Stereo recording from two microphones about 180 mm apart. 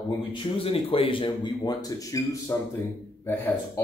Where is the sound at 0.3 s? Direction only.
30° left (ahead or behind); by 3.8 s 10° left (ahead or behind).